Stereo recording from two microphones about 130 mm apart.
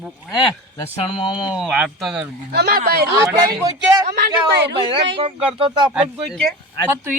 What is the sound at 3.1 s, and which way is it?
Speech, 25° right (ahead or behind).